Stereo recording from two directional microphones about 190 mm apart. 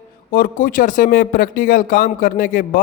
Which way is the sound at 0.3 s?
50° left (ahead or behind).